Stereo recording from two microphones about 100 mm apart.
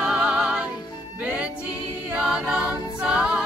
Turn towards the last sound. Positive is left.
turn(degrees=-10)  # may be behind; listen again after turning